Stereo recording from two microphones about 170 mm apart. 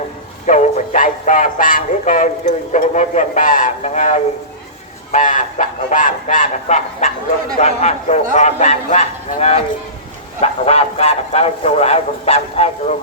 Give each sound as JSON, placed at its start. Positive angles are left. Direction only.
{"t": 0.4, "sound": "speech", "side_deg": 45}